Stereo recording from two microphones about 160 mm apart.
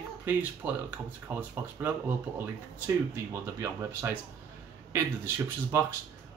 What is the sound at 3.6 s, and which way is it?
Speech, 15° right (ahead or behind).